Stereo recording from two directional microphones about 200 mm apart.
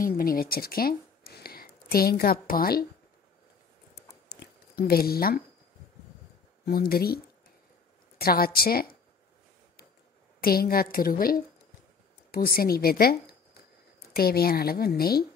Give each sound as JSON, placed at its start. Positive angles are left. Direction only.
{"t": 0.0, "sound": "speech", "side_deg": 45}
{"t": 4.3, "sound": "a sound", "side_deg": 50}
{"t": 6.6, "sound": "speech", "side_deg": 50}
{"t": 8.2, "sound": "a woman's voice", "side_deg": 50}
{"t": 10.4, "sound": "speech", "side_deg": 50}